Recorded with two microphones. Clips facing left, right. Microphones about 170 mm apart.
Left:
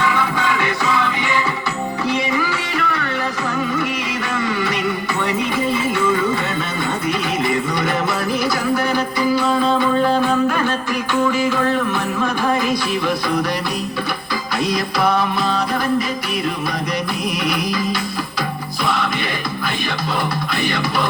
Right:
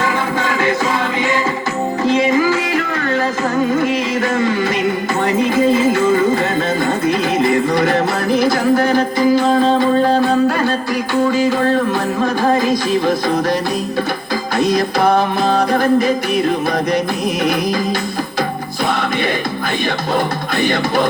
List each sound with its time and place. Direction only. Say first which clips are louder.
0.0 s music: right 1 dB; 45° right (ahead or behind)
2.1 s music: right 7 dB; 45° right (ahead or behind)
4.4 s a sound: right 2 dB; 45° right (ahead or behind)
5.9 s music: right 5 dB; 45° right (ahead or behind)
7.5 s music: right 6 dB; 50° right (ahead or behind)
14.6 s music: right 5 dB; 50° right (ahead or behind)
20.1 s music: right 4 dB; 50° right (ahead or behind)